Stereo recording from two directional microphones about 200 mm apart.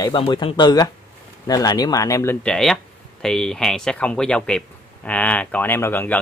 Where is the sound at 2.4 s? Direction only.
5° left (ahead or behind).